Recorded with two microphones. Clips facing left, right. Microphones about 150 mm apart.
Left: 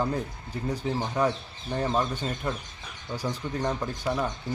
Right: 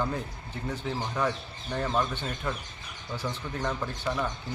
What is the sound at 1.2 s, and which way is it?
Speech, 30° left (ahead or behind).